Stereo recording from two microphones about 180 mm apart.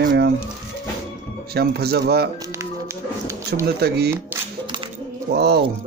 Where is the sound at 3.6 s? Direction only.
65° right (ahead or behind).